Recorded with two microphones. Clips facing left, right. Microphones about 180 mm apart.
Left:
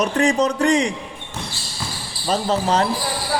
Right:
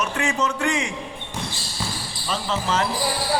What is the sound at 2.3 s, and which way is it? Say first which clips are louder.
Speech: left 6 dB; 40° left (ahead or behind).